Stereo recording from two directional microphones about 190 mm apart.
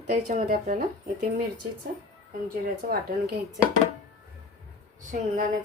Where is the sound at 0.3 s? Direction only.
40° right (ahead or behind).